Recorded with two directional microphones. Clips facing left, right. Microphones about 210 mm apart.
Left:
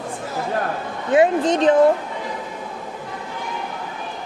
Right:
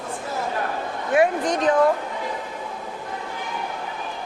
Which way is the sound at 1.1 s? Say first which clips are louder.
Left 4 dB; 25° left (ahead or behind).